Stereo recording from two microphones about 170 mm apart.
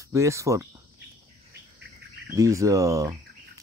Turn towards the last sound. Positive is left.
turn(degrees=-20)  # may be behind; listen again after turning